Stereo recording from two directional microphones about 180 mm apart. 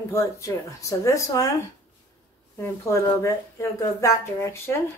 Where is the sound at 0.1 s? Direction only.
15° left (ahead or behind).